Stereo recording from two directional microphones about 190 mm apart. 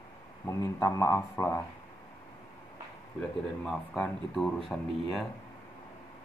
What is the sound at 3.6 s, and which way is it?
Speech, 5° left (ahead or behind).